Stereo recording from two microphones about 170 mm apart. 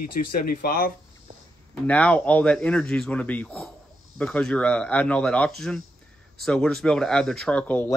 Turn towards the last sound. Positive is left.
turn(degrees=10)  # may be behind; listen again after turning